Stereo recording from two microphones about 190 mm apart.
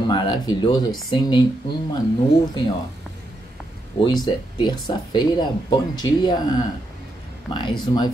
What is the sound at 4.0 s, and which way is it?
Speech, 25° left (ahead or behind).